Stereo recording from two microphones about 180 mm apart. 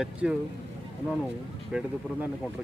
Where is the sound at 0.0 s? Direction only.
5° right (ahead or behind).